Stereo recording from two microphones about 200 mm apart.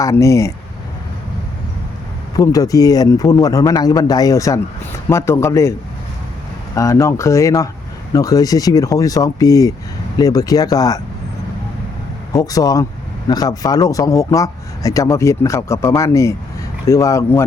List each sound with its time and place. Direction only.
0.0 s speech: 15° left (ahead or behind)
2.3 s speech: 20° left (ahead or behind)
6.7 s speech: 15° left (ahead or behind)
12.3 s speech: 20° left (ahead or behind)